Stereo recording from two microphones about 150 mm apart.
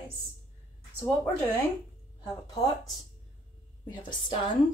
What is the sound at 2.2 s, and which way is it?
Speech, 25° left (ahead or behind).